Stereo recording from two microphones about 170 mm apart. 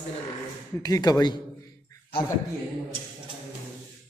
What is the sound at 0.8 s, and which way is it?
Speech, 20° left (ahead or behind).